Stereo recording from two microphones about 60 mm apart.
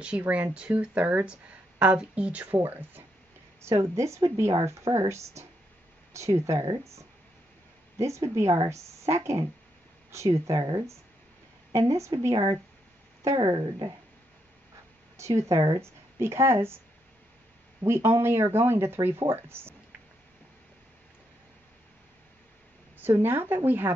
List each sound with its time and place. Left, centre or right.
0.2 s speech: right
3.6 s a woman's voice: right
11.7 s a woman's voice: right
13.2 s a woman's voice: right
15.1 s speech: right
17.8 s speech: right
22.9 s a woman's voice: right